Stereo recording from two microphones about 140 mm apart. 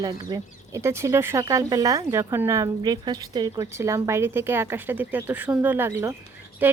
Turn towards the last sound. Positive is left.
turn(degrees=-15)  # may be behind; listen again after turning